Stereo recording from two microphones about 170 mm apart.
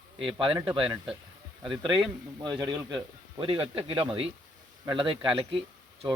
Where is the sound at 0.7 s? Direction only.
30° right (ahead or behind).